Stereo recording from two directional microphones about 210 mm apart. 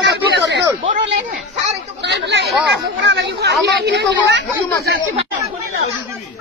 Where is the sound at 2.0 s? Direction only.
55° right (ahead or behind).